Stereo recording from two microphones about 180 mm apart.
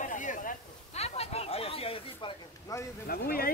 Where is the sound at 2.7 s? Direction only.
20° left (ahead or behind).